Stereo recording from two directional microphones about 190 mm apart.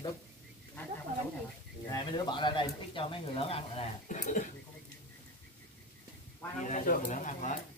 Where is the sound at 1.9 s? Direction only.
25° left (ahead or behind); by 4.5 s 40° left (ahead or behind).